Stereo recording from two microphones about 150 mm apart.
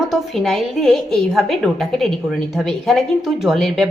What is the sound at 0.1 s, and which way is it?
A woman's voice, centre (ahead or behind).